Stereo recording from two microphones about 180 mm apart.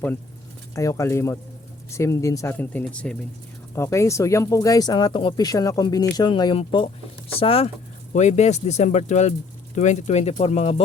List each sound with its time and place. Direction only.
0.8 s speech: 20° left (ahead or behind); by 10.8 s 35° left (ahead or behind)